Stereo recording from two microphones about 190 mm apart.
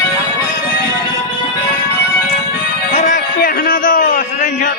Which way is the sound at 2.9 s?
45° left (ahead or behind).